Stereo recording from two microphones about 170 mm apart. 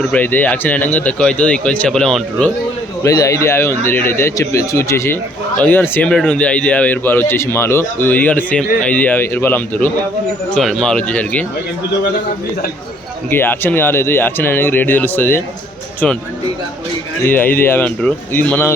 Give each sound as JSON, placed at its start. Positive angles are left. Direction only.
{"t": 0.0, "sound": "speech", "side_deg": 10}
{"t": 3.0, "sound": "speech", "side_deg": 20}
{"t": 13.3, "sound": "speech", "side_deg": 10}
{"t": 17.2, "sound": "speech", "side_deg": 10}